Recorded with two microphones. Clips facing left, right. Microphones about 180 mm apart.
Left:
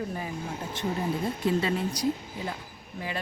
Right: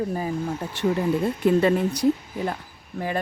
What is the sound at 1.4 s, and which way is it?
Speech, 55° right (ahead or behind).